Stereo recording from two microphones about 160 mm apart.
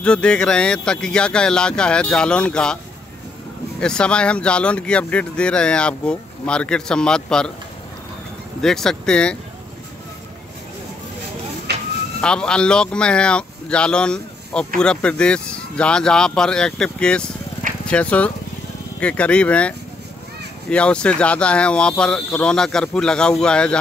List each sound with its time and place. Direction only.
0.0 s speech: 5° left (ahead or behind)
3.8 s speech: 5° left (ahead or behind)
8.5 s speech: 5° left (ahead or behind)
11.7 s a sound: 90° right
12.2 s speech: 5° left (ahead or behind)
20.7 s speech: 5° left (ahead or behind)